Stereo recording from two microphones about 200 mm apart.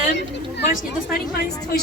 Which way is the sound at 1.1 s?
50° left (ahead or behind).